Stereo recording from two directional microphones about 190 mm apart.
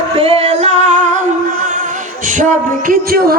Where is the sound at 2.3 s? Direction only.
40° right (ahead or behind).